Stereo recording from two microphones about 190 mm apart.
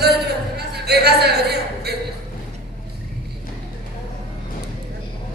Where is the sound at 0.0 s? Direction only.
60° right (ahead or behind).